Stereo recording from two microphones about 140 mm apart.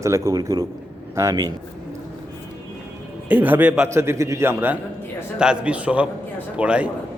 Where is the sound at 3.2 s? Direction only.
10° right (ahead or behind).